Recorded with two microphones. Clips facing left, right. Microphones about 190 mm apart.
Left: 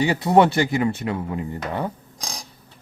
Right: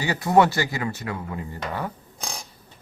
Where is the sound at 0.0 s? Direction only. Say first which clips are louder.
Left 3 dB; 25° left (ahead or behind).